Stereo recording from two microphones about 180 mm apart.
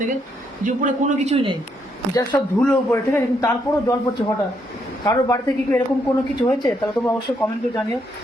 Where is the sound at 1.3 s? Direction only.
30° right (ahead or behind).